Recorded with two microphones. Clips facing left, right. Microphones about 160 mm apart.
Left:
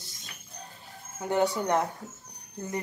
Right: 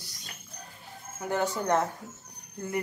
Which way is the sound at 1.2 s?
20° left (ahead or behind).